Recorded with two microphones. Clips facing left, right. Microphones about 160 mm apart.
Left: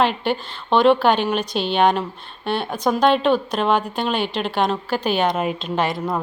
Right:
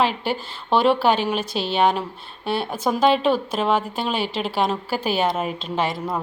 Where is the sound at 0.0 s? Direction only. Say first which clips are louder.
Left 2 dB; 5° right (ahead or behind).